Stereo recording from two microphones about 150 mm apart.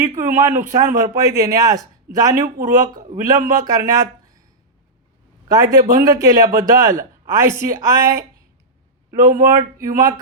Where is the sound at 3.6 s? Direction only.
20° right (ahead or behind).